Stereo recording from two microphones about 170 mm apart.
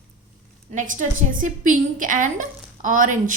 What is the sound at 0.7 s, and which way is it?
A woman's voice, 50° right (ahead or behind).